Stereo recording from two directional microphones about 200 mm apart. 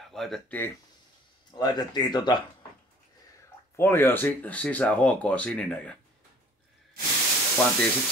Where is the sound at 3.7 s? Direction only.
10° left (ahead or behind).